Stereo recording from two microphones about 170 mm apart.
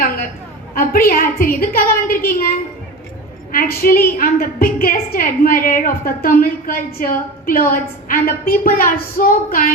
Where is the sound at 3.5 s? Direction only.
60° left (ahead or behind).